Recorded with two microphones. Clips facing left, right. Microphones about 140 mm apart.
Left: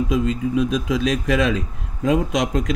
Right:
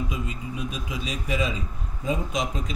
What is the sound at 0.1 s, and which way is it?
Speech, 90° left.